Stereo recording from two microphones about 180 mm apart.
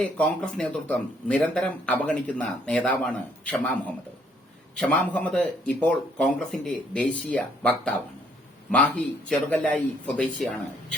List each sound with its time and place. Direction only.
0.2 s speech: 5° left (ahead or behind)
4.7 s speech: 5° left (ahead or behind)